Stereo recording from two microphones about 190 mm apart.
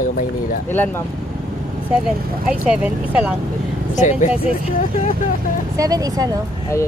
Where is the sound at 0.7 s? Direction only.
10° left (ahead or behind).